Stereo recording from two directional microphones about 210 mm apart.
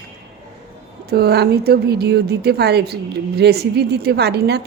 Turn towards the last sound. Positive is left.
turn(degrees=-50)  # may be behind; listen again after turning